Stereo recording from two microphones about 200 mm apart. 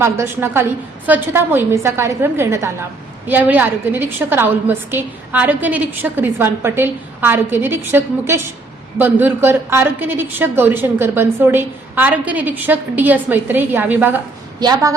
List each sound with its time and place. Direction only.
0.0 s a woman's voice: 10° right (ahead or behind)